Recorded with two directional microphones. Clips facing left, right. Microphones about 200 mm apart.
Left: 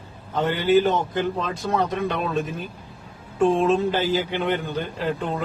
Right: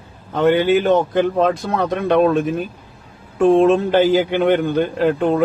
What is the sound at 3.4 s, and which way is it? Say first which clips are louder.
A man's voice: right 6 dB; 65° right (ahead or behind).